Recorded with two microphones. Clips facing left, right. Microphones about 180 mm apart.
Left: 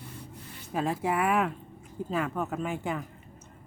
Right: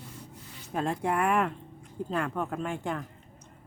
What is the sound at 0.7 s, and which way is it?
Speech, 5° left (ahead or behind).